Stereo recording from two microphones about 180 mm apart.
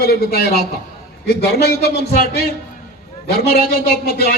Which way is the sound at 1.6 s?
60° left (ahead or behind).